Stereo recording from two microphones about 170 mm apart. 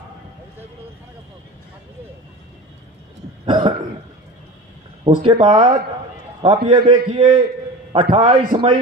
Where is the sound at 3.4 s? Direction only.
30° right (ahead or behind).